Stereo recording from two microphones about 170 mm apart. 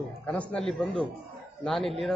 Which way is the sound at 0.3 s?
5° left (ahead or behind).